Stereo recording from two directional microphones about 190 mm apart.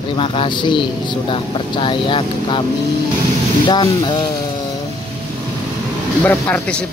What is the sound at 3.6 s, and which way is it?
Speech, 25° left (ahead or behind).